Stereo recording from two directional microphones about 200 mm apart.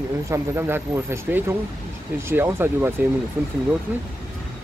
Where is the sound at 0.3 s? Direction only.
10° right (ahead or behind).